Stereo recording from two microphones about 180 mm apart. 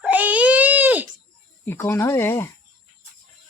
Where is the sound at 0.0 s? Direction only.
10° right (ahead or behind).